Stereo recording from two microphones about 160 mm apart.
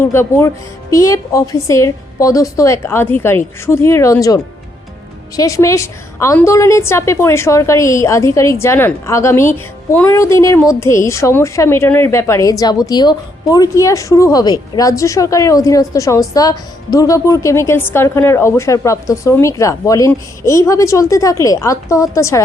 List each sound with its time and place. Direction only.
0.0 s a woman's voice: 15° left (ahead or behind)
5.4 s a woman's voice: 20° left (ahead or behind)